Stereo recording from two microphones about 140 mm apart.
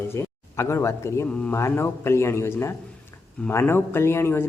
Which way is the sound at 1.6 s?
20° left (ahead or behind).